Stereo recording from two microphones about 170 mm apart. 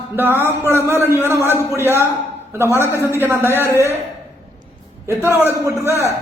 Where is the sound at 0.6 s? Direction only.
15° left (ahead or behind).